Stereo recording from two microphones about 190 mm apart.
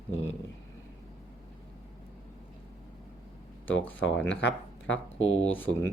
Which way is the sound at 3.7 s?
85° left.